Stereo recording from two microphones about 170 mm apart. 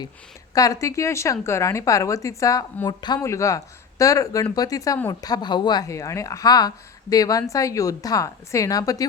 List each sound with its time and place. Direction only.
0.5 s a woman's voice: 20° left (ahead or behind)